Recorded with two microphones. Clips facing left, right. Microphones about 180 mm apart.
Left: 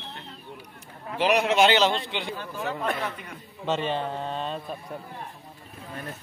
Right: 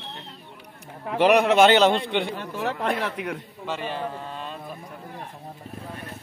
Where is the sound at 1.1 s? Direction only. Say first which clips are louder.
Right 5 dB; 60° right (ahead or behind).